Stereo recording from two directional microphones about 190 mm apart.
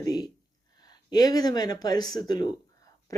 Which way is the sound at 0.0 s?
20° left (ahead or behind).